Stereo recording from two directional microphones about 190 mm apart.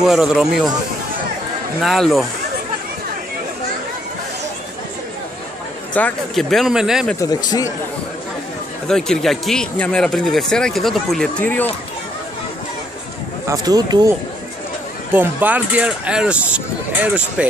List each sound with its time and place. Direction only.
0.0 s speech: centre (ahead or behind)
1.8 s speech: centre (ahead or behind)
5.9 s speech: 5° left (ahead or behind)
7.2 s speech: 20° left (ahead or behind)
8.8 s speech: centre (ahead or behind)
13.5 s speech: 20° right (ahead or behind)
15.1 s speech: 10° right (ahead or behind)